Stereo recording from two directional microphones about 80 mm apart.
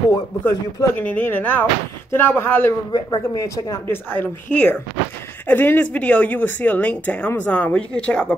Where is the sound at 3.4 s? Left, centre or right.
Left.